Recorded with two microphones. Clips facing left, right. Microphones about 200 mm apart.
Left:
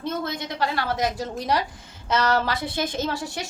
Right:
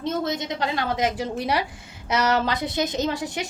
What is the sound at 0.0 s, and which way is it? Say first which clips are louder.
A woman's voice: right 3 dB; 20° right (ahead or behind).